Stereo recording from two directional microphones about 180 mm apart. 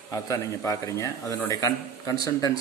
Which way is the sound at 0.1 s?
15° left (ahead or behind).